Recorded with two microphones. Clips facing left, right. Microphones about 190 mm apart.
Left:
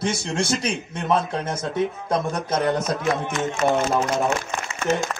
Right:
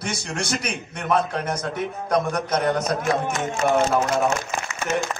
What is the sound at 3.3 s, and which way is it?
Speech, 40° right (ahead or behind).